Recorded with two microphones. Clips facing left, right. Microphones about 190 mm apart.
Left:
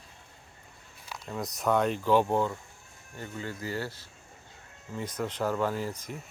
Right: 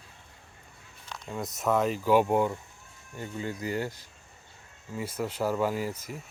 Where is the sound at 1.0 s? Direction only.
10° left (ahead or behind).